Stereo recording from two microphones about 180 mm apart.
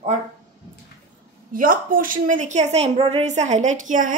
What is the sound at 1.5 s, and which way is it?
A woman's voice, 50° right (ahead or behind).